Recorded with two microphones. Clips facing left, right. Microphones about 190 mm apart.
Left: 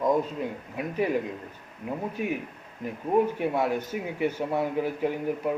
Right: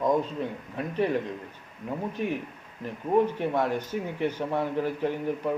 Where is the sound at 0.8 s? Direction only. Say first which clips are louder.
Even; 10° left (ahead or behind).